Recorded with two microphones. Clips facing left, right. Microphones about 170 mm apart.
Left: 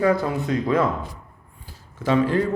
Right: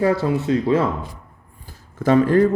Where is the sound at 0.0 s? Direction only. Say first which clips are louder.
Right 2 dB; 30° right (ahead or behind).